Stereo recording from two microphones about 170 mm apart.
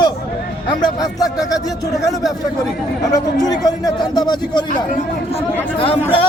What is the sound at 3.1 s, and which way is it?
A man's voice, 25° left (ahead or behind).